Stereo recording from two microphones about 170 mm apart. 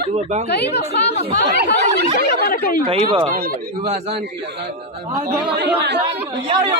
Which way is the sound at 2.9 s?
35° right (ahead or behind).